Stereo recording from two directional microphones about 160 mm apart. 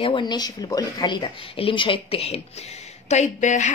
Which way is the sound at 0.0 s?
30° left (ahead or behind).